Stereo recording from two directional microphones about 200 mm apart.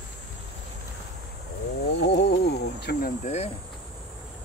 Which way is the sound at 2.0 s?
60° left (ahead or behind).